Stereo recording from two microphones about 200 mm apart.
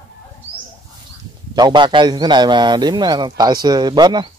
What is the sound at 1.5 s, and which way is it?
A man's voice, 20° right (ahead or behind).